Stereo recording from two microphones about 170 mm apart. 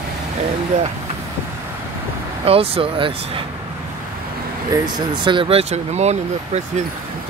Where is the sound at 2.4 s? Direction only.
35° right (ahead or behind).